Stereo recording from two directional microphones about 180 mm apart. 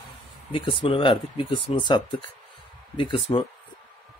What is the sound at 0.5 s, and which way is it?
Speech, 30° left (ahead or behind).